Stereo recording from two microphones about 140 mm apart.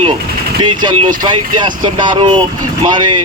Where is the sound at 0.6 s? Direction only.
35° right (ahead or behind).